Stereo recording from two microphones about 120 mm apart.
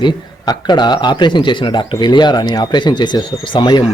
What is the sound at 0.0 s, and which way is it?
A man's voice, 35° left (ahead or behind).